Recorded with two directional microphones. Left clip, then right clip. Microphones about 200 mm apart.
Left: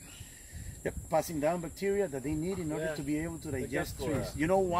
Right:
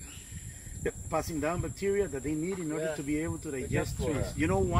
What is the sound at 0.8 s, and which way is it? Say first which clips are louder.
Speech: left 1 dB; 50° left (ahead or behind).